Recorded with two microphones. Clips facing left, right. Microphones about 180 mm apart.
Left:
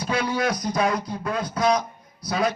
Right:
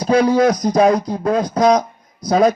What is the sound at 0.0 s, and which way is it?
A man's voice, 40° right (ahead or behind).